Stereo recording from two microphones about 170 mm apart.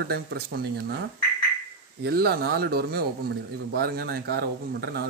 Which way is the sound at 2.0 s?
65° right (ahead or behind).